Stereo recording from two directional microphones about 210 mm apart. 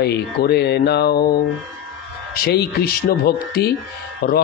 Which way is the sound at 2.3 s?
45° left (ahead or behind).